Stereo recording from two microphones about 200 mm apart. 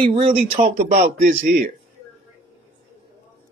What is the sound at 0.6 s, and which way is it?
A man's voice, 45° right (ahead or behind).